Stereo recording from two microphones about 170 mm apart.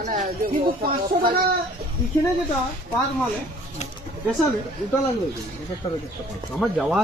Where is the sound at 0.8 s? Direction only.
60° right (ahead or behind).